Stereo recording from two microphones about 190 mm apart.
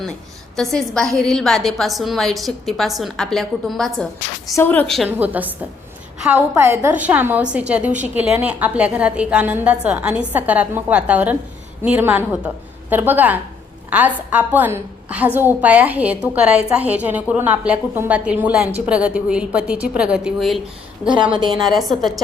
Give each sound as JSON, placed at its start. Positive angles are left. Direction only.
{"t": 0.5, "sound": "a woman's voice", "side_deg": 0}
{"t": 5.0, "sound": "a woman's voice", "side_deg": -10}
{"t": 21.3, "sound": "a woman's voice", "side_deg": -20}
{"t": 21.8, "sound": "a woman's voice", "side_deg": 0}